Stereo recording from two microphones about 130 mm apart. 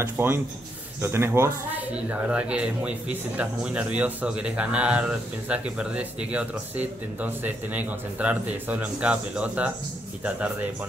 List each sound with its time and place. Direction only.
0.0 s speech: 15° right (ahead or behind)